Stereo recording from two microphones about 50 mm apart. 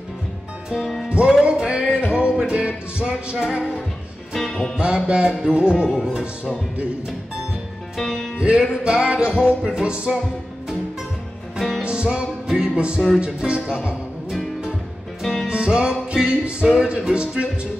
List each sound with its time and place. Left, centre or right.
0.7 s music: centre
1.0 s music: centre
4.3 s music: centre
4.7 s music: centre
8.0 s music: centre
8.4 s music: centre
11.8 s music: centre
15.4 s music: centre